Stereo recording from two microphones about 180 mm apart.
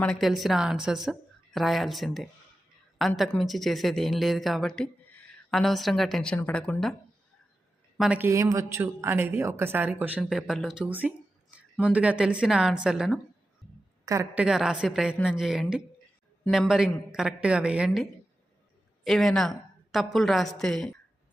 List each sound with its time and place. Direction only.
0.0 s speech: centre (ahead or behind)
7.9 s speech: 5° right (ahead or behind)
8.3 s speech: 15° right (ahead or behind)
14.0 s a woman's voice: 15° right (ahead or behind)
14.4 s speech: 5° right (ahead or behind)